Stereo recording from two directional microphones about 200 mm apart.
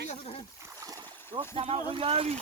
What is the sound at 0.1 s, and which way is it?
Splash, 30° left (ahead or behind).